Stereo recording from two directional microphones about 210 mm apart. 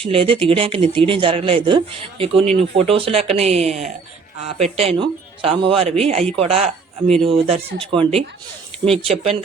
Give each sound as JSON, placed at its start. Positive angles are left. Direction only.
{"t": 0.0, "sound": "speech", "side_deg": -25}